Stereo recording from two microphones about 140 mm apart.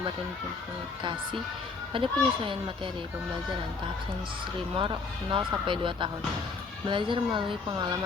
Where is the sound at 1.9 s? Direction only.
40° right (ahead or behind).